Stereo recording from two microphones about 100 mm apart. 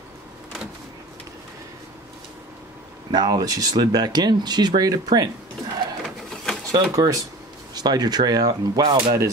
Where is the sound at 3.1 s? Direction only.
45° right (ahead or behind).